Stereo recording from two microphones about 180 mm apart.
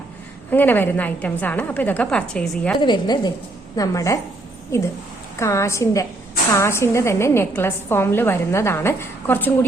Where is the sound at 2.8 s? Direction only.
25° left (ahead or behind).